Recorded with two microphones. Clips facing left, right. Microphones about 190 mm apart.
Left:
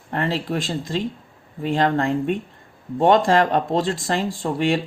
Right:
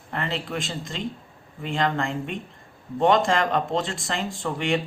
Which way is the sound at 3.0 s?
40° left (ahead or behind).